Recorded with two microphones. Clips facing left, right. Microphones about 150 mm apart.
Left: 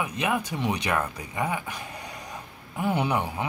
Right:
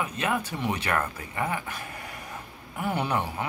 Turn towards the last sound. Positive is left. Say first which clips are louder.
# left 2 dB
turn(degrees=15)  # may be behind; listen again after turning